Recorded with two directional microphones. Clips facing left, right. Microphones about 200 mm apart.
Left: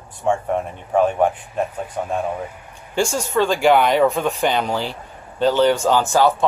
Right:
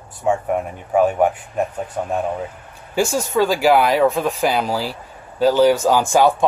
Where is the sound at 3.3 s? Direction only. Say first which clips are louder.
Even; 5° right (ahead or behind).